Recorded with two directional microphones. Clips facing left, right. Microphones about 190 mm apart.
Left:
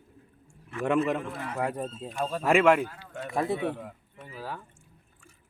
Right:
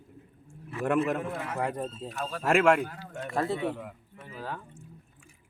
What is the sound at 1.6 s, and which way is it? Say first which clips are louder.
A man's voice: left 3 dB; 10° left (ahead or behind).